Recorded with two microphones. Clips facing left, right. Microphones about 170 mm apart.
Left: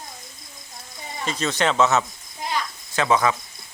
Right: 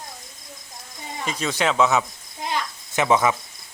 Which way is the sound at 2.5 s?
20° right (ahead or behind).